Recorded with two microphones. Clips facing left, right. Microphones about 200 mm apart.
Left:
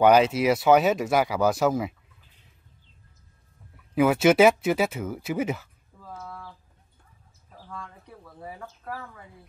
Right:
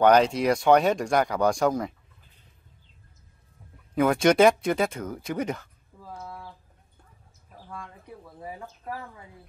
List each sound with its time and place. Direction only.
0.0 s speech: 5° left (ahead or behind)
3.9 s speech: 5° left (ahead or behind)
6.2 s a sound: 15° right (ahead or behind)
8.4 s speech: 15° right (ahead or behind)